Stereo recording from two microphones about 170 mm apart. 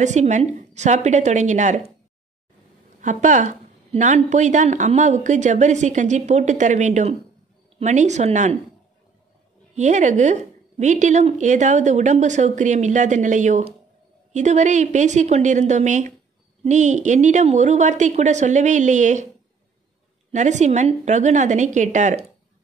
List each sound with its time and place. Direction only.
0.0 s a woman's voice: 45° right (ahead or behind)
3.0 s a woman's voice: 45° right (ahead or behind)
9.8 s a woman's voice: 45° right (ahead or behind)
20.2 s a woman's voice: 45° right (ahead or behind)